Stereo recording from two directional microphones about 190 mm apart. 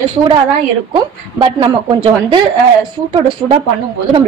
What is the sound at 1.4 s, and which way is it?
A woman's voice, 25° right (ahead or behind).